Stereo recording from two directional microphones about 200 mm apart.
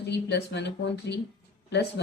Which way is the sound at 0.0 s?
55° left (ahead or behind).